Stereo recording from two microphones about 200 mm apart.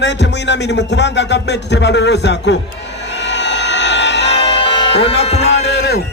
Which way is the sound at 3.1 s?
60° left (ahead or behind).